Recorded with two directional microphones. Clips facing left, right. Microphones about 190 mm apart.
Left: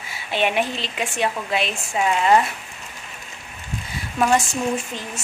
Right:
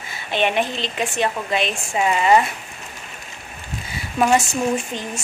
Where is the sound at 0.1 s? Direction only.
5° left (ahead or behind).